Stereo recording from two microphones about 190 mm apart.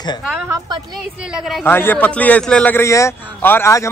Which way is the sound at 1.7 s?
10° left (ahead or behind).